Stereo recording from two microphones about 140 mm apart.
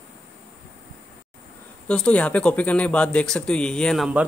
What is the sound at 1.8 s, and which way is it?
Speech, 10° left (ahead or behind).